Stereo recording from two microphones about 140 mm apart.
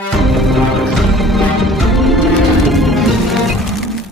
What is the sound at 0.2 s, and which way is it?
Music, centre (ahead or behind).